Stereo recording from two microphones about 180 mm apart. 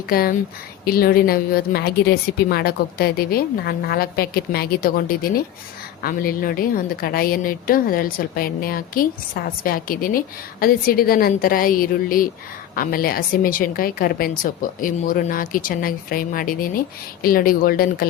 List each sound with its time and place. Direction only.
0.1 s a woman's voice: 55° left (ahead or behind)